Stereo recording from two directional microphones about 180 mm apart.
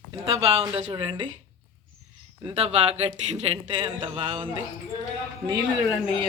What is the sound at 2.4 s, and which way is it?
A man's voice, 35° right (ahead or behind).